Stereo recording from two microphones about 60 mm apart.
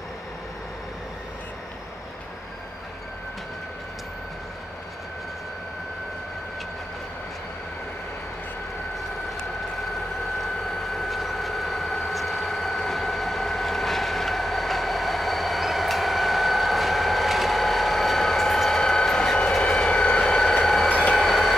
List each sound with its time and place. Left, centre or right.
10.4 s vehicle: centre
20.9 s train: centre
21.2 s train: centre